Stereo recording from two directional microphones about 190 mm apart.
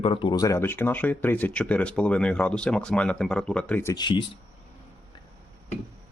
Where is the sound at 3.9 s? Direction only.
25° left (ahead or behind).